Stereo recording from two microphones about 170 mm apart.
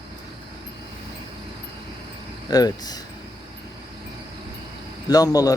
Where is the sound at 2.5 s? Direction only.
25° left (ahead or behind).